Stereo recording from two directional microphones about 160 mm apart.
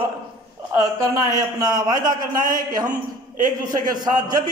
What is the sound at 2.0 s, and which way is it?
Speech, 60° right (ahead or behind).